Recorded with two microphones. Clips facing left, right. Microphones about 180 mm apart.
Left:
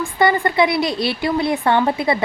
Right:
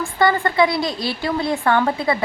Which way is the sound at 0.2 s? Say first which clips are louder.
Left 1 dB; 20° left (ahead or behind).